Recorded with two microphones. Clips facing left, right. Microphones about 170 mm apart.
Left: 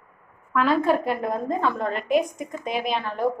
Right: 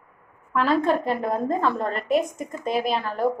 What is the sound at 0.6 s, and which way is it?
A woman's voice, 5° left (ahead or behind).